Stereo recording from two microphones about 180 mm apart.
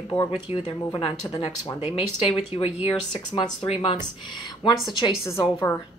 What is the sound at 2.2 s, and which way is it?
A woman's voice, 35° left (ahead or behind).